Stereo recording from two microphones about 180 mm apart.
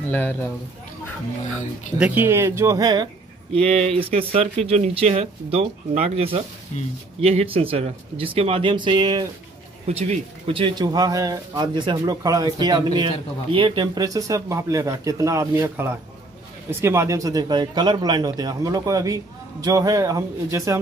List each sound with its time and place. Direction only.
0.1 s speech: 10° left (ahead or behind)
2.0 s speech: 10° right (ahead or behind)
3.5 s speech: 35° right (ahead or behind)
9.8 s a man's voice: 40° right (ahead or behind); by 20.7 s 15° right (ahead or behind)